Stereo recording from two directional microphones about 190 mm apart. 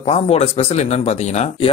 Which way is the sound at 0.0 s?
30° left (ahead or behind).